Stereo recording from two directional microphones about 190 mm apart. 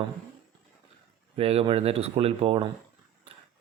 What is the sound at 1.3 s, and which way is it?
Speech, 30° right (ahead or behind).